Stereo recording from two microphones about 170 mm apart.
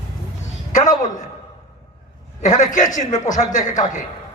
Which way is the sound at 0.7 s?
45° left (ahead or behind).